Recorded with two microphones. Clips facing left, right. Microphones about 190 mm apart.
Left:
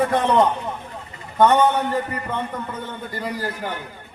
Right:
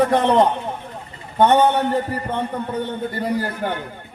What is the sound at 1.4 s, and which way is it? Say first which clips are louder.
Speech: right 1 dB; 20° right (ahead or behind).